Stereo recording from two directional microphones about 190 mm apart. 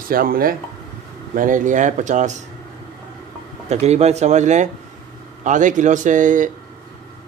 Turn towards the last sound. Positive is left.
turn(degrees=-40)  # may be behind; listen again after turning